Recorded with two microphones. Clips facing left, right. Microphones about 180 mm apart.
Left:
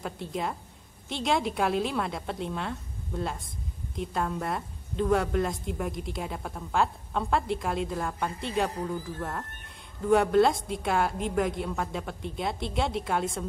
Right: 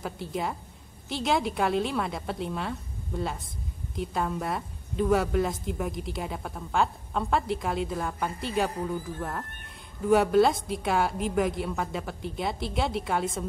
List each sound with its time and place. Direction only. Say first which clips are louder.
0.0 s a woman's voice: right 1 dB; centre (ahead or behind)